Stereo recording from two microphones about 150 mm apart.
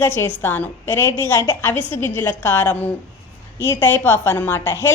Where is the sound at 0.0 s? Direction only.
15° left (ahead or behind).